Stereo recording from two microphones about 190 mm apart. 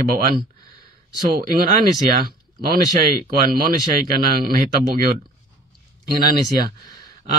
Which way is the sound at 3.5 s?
50° right (ahead or behind).